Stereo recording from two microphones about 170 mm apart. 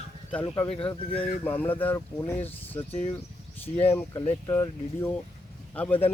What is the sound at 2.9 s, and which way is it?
Speech, 40° left (ahead or behind).